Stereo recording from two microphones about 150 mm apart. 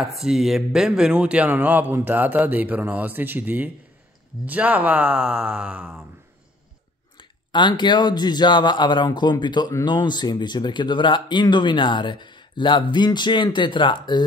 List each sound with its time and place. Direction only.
0.0 s a man's voice: centre (ahead or behind)
7.2 s speech: 30° left (ahead or behind)